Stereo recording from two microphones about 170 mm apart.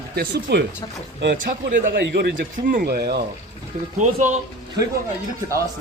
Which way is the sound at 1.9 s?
85° right.